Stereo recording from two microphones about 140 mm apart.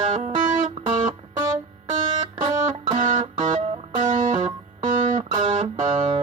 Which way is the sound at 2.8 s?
30° right (ahead or behind).